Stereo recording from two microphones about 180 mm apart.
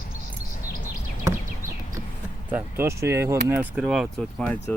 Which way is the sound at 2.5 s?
10° right (ahead or behind).